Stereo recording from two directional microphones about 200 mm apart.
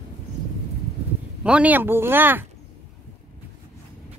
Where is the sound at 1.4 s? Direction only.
5° right (ahead or behind).